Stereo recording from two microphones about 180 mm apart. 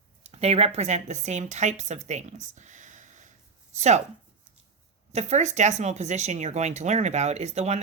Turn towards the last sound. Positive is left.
turn(degrees=-35)  # may be behind; listen again after turning